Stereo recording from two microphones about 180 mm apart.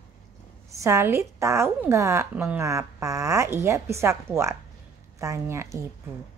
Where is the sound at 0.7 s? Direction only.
15° right (ahead or behind).